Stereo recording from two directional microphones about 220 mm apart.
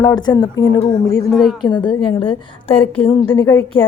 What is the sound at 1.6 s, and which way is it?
A woman's voice, 20° left (ahead or behind).